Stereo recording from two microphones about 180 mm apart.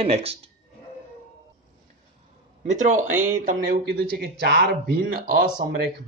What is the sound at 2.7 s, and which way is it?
Speech, 45° right (ahead or behind).